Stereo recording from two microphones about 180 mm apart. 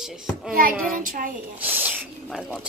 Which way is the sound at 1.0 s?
50° right (ahead or behind).